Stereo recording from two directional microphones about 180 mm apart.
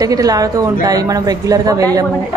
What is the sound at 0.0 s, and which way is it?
A woman's voice, 20° right (ahead or behind).